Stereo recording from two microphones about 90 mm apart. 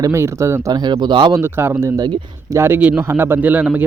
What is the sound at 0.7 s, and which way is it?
Speech, 55° right (ahead or behind).